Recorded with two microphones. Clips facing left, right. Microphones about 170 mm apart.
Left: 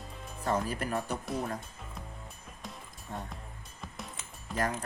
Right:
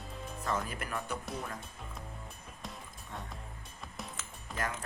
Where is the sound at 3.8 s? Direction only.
Centre (ahead or behind).